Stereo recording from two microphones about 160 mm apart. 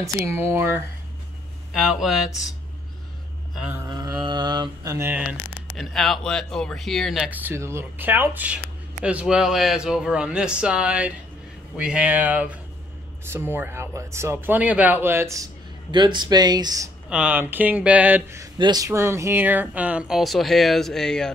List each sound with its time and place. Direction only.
0.0 s speech: 15° right (ahead or behind)
1.7 s speech: 5° right (ahead or behind)
3.5 s speech: 5° right (ahead or behind)
3.9 s speech: 25° right (ahead or behind)
4.9 s speech: 15° right (ahead or behind)
5.8 s speech: centre (ahead or behind); by 15.4 s 15° right (ahead or behind)
15.9 s speech: 30° right (ahead or behind)
17.1 s speech: 10° right (ahead or behind)